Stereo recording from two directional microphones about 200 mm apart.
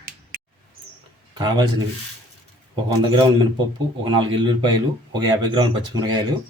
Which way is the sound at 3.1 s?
20° right (ahead or behind).